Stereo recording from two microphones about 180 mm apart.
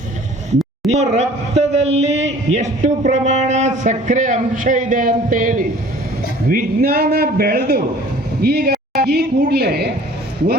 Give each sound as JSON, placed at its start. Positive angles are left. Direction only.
{"t": 0.9, "sound": "a man's voice", "side_deg": -35}